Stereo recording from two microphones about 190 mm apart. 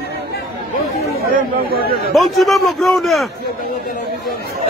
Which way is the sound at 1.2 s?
50° right (ahead or behind).